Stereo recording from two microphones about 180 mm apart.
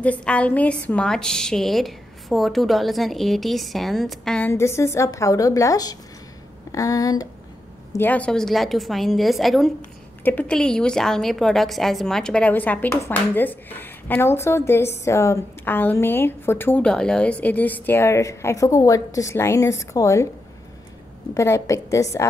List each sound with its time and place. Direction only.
0.0 s a woman's voice: 5° left (ahead or behind)
4.5 s a woman's voice: 15° left (ahead or behind)
21.4 s a woman's voice: 15° left (ahead or behind)